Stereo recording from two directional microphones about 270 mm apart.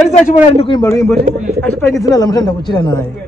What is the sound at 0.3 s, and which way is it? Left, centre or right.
A man's voice, centre.